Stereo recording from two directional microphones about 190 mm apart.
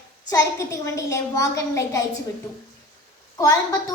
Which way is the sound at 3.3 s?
20° left (ahead or behind).